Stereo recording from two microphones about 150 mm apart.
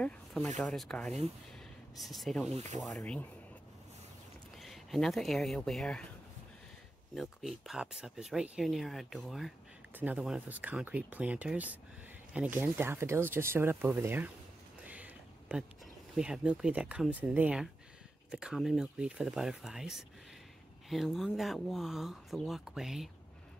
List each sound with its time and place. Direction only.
0.0 s a sound: 10° left (ahead or behind)
0.6 s speech: 5° left (ahead or behind)
2.5 s speech: 50° right (ahead or behind)
3.0 s speech: 10° left (ahead or behind)
4.6 s speech: centre (ahead or behind)
7.2 s speech: centre (ahead or behind)
14.9 s a sound: 10° right (ahead or behind)
16.2 s speech: 5° right (ahead or behind)